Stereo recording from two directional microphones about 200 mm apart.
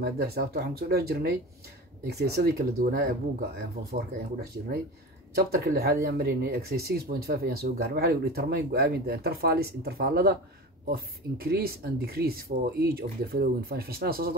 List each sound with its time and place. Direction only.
0.0 s speech: 50° right (ahead or behind)
5.3 s speech: 50° right (ahead or behind)